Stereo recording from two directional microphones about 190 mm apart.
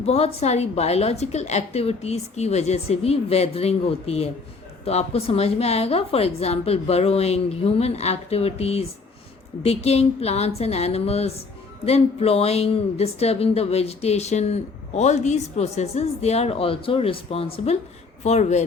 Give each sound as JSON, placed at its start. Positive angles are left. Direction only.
{"t": 0.0, "sound": "a woman's voice", "side_deg": 35}